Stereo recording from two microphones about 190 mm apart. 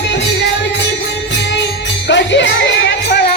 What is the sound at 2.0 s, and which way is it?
Music, 70° left (ahead or behind).